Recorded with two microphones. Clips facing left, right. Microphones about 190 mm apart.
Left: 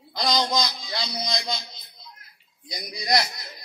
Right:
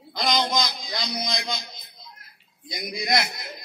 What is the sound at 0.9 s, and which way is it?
Music, 15° right (ahead or behind).